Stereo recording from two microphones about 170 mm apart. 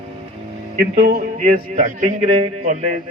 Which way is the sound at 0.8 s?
55° right (ahead or behind).